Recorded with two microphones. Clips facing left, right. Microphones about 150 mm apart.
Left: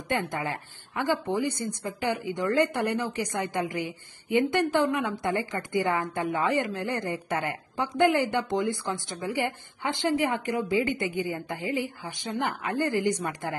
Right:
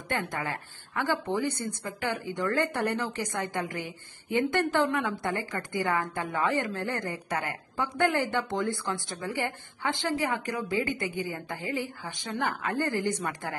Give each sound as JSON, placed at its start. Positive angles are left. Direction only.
{"t": 0.1, "sound": "a woman's voice", "side_deg": 20}